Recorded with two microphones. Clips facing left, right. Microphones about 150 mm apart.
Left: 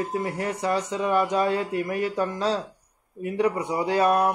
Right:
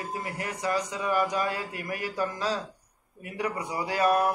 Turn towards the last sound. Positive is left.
turn(degrees=25)  # may be behind; listen again after turning